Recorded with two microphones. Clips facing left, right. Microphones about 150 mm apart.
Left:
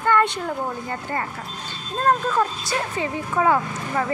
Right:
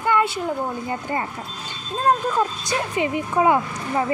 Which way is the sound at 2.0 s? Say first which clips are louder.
Even; 10° right (ahead or behind).